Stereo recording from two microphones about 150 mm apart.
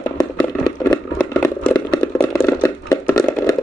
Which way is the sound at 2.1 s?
15° left (ahead or behind).